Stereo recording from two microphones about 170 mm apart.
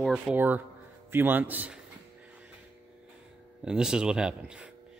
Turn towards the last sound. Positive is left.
turn(degrees=-5)  # may be behind; listen again after turning